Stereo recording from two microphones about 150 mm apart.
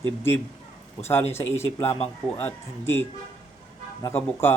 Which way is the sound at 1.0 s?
15° left (ahead or behind).